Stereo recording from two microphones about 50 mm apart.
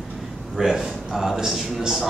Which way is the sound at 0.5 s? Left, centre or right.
Centre.